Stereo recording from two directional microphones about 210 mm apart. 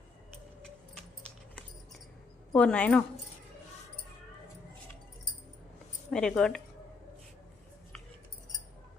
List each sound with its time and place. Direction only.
2.5 s a woman's voice: 5° left (ahead or behind)
6.1 s a woman's voice: 5° left (ahead or behind)